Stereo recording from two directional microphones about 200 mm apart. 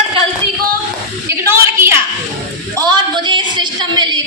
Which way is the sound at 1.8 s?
10° right (ahead or behind).